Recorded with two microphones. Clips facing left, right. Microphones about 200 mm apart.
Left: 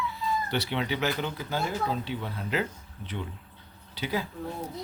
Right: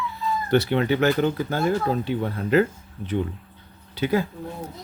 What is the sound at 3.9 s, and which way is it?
Speech, 50° right (ahead or behind).